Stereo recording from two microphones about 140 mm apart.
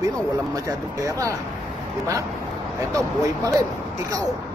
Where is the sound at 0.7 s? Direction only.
25° right (ahead or behind).